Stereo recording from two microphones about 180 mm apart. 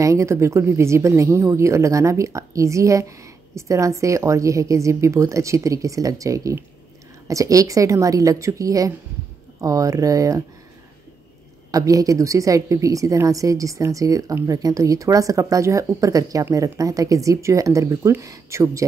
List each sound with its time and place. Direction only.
0.0 s a woman's voice: 15° right (ahead or behind)
11.7 s a woman's voice: 20° right (ahead or behind)